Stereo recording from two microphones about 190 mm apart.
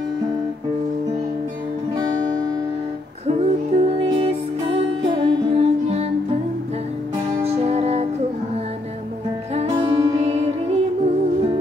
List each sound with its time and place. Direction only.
3.3 s music: 30° right (ahead or behind)
7.4 s music: 35° right (ahead or behind)
9.6 s music: 30° right (ahead or behind)